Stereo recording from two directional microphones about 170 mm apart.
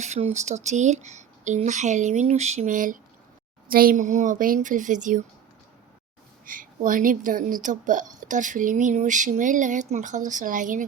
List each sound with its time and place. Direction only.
0.0 s speech: 40° right (ahead or behind)
6.4 s speech: 55° right (ahead or behind)